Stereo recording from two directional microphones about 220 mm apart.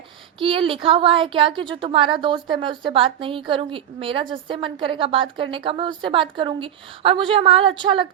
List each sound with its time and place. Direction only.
0.3 s speech: 25° right (ahead or behind)